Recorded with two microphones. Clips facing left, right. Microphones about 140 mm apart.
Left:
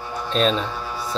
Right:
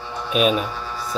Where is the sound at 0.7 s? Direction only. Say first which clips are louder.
Left 1 dB; 5° left (ahead or behind).